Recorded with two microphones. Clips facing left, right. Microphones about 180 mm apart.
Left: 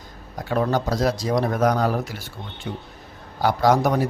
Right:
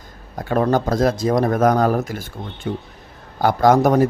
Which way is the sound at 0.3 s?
50° right (ahead or behind).